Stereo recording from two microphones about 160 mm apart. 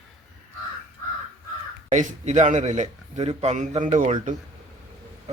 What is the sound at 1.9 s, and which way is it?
A man's voice, 50° right (ahead or behind).